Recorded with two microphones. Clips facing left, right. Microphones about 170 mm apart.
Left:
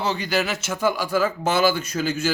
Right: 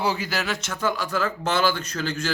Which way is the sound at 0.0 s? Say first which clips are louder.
Left 2 dB; 5° right (ahead or behind).